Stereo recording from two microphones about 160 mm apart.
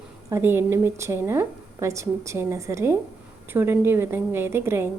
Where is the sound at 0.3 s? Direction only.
15° right (ahead or behind).